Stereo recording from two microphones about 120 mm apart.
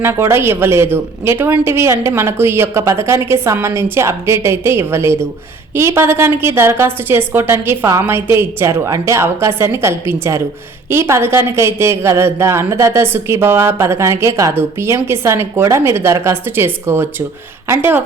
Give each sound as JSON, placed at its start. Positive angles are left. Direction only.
{"t": 0.0, "sound": "a woman's voice", "side_deg": -20}